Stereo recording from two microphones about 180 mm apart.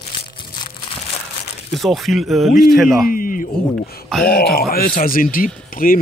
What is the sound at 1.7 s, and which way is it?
Speech, centre (ahead or behind).